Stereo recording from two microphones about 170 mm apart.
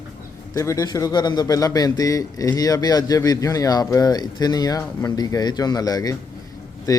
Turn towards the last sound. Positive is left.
turn(degrees=20)  # may be behind; listen again after turning